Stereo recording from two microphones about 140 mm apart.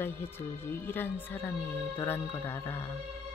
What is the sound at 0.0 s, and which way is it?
Speech, 15° left (ahead or behind).